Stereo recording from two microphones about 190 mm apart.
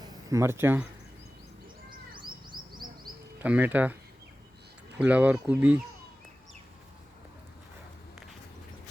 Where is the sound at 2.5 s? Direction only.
50° right (ahead or behind).